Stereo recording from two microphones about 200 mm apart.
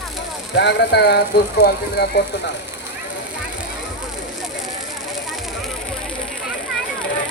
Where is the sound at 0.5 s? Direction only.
60° left (ahead or behind).